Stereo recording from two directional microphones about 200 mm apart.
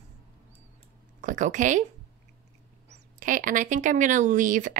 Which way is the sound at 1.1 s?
40° right (ahead or behind).